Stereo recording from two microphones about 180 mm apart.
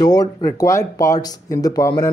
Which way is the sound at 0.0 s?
20° left (ahead or behind).